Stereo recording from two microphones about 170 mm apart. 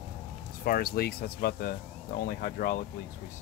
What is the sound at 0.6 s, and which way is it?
Speech, 60° left (ahead or behind).